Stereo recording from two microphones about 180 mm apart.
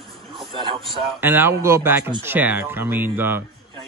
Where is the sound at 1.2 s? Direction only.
10° right (ahead or behind).